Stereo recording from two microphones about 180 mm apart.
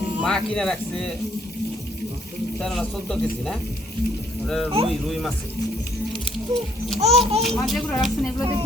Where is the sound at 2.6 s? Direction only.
5° left (ahead or behind).